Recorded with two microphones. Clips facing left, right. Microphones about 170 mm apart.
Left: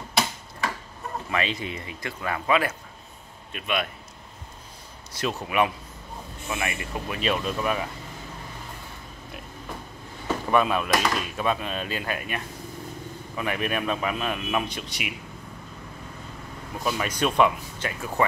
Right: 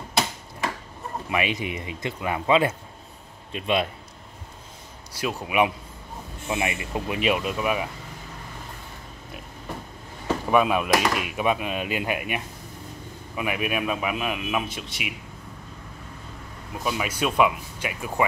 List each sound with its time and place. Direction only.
1.3 s a man's voice: 15° right (ahead or behind)
5.1 s speech: 10° right (ahead or behind)
10.2 s speech: 10° right (ahead or behind)
13.4 s speech: 10° right (ahead or behind)
16.8 s speech: 5° right (ahead or behind)